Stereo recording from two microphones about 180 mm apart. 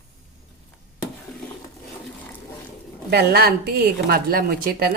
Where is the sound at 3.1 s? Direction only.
60° right (ahead or behind).